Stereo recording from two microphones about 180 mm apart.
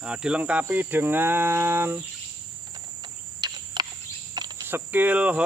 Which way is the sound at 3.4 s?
25° right (ahead or behind).